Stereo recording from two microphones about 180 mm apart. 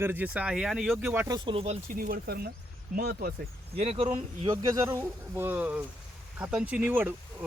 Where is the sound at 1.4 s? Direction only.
30° right (ahead or behind).